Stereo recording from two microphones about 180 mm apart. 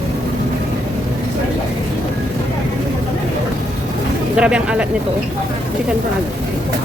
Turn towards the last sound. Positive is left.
turn(degrees=-5)  # may be behind; listen again after turning